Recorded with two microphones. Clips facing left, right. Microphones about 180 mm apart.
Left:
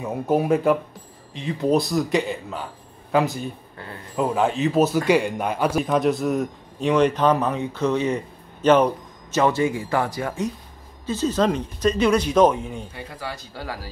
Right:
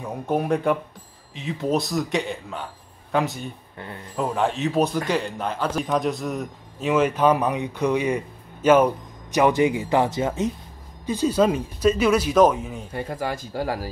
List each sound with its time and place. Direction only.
0.0 s speech: 5° left (ahead or behind)
12.9 s speech: 45° right (ahead or behind)